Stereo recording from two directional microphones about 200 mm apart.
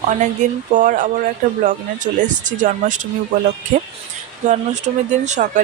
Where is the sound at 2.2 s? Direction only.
40° right (ahead or behind).